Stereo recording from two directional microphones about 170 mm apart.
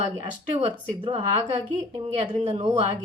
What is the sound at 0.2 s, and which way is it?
A woman's voice, 35° right (ahead or behind).